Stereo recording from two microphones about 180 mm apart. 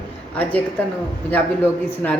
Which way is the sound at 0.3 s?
10° left (ahead or behind).